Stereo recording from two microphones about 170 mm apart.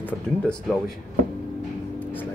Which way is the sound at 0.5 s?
Centre (ahead or behind).